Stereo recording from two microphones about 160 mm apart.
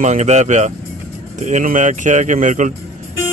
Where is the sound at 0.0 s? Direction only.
45° right (ahead or behind).